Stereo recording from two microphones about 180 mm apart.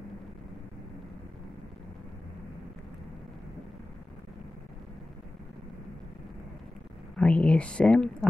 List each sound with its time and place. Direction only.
7.2 s speech: 5° left (ahead or behind)